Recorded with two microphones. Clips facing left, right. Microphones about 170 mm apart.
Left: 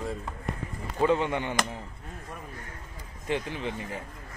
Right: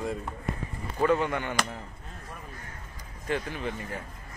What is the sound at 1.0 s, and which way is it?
Speech, 20° left (ahead or behind).